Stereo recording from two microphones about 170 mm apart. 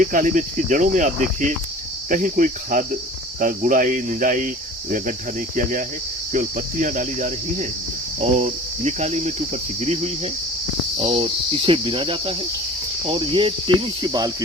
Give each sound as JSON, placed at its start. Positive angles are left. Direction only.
{"t": 0.0, "sound": "cricket", "side_deg": -50}
{"t": 6.3, "sound": "cricket", "side_deg": -50}